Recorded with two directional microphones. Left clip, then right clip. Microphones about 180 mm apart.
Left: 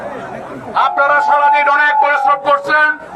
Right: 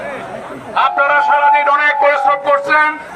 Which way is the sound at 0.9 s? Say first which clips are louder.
Left 1 dB; 30° left (ahead or behind).